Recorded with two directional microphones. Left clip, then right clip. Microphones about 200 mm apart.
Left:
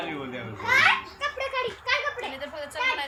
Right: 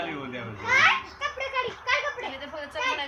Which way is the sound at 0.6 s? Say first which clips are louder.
Even; 55° left (ahead or behind).